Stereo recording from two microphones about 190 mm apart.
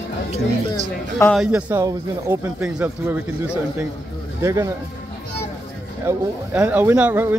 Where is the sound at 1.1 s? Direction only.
Centre (ahead or behind).